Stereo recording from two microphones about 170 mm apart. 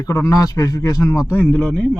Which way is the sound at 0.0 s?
20° left (ahead or behind).